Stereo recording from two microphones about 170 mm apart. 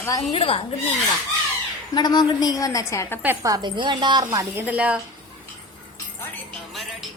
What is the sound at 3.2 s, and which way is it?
A woman's voice, 15° right (ahead or behind).